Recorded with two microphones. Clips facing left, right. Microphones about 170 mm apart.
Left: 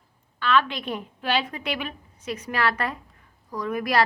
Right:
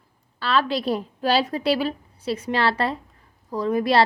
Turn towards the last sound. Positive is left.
turn(degrees=-30)  # may be behind; listen again after turning